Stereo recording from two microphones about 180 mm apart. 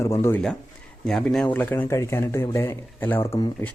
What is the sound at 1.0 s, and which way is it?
Speech, centre (ahead or behind).